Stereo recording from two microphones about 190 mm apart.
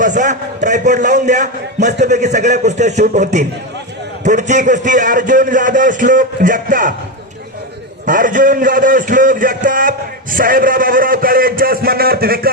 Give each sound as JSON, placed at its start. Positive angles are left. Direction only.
{"t": 0.0, "sound": "a man's voice", "side_deg": -40}
{"t": 8.0, "sound": "a man's voice", "side_deg": -45}